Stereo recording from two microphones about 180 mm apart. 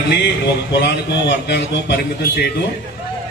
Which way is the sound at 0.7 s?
70° left (ahead or behind).